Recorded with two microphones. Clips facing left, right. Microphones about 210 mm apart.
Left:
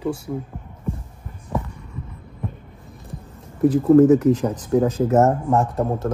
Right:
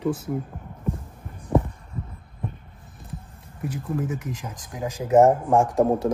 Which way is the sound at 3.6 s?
80° left.